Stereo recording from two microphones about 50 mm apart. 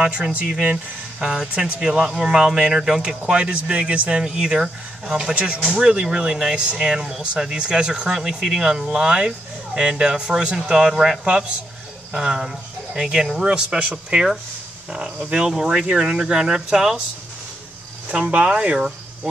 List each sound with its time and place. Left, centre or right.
1.2 s speech: centre
4.2 s speech: centre
5.3 s speech: right
5.8 s speech: centre
8.8 s speech: right
10.9 s speech: centre
11.2 s speech: centre
18.3 s speech: right